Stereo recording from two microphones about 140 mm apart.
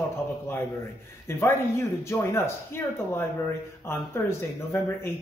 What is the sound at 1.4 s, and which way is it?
Speech, 15° left (ahead or behind).